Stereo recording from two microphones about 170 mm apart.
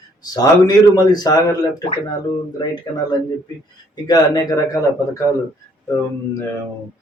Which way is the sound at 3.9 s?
20° left (ahead or behind).